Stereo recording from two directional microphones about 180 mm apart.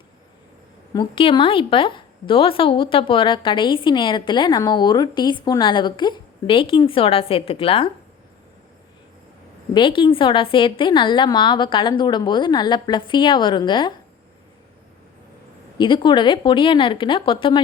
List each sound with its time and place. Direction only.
0.9 s a woman's voice: 30° left (ahead or behind)
9.7 s a woman's voice: 30° left (ahead or behind)
15.8 s a woman's voice: 25° left (ahead or behind)